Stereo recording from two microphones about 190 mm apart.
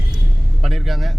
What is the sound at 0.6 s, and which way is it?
Speech, centre (ahead or behind).